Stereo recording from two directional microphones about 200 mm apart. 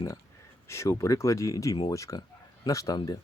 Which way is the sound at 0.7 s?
15° left (ahead or behind).